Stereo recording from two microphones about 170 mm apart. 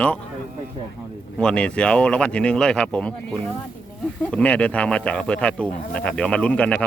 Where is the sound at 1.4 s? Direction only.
5° left (ahead or behind).